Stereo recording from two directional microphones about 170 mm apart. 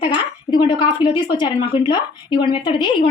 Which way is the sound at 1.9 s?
25° left (ahead or behind).